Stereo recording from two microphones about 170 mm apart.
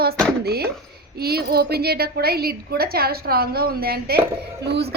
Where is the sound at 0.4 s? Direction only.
65° right (ahead or behind).